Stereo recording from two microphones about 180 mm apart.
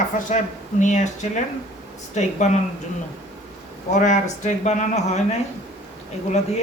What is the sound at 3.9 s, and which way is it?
Speech, 40° left (ahead or behind).